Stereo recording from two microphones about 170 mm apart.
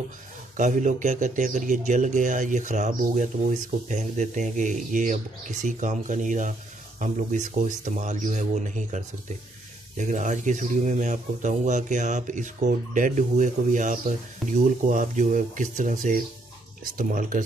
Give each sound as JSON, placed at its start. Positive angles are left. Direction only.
{"t": 0.6, "sound": "a man's voice", "side_deg": -45}